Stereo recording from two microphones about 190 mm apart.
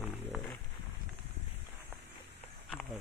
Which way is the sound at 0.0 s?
5° left (ahead or behind).